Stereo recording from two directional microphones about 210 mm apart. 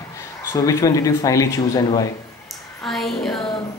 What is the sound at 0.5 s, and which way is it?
Speech, 15° left (ahead or behind).